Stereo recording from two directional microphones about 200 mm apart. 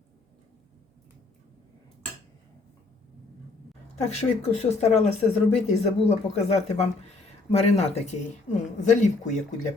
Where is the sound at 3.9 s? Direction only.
35° left (ahead or behind).